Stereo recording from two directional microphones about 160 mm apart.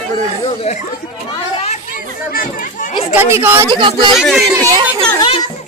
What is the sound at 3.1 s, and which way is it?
Speech, 15° right (ahead or behind).